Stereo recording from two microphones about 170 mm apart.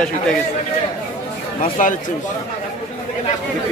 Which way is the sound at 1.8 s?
50° left (ahead or behind).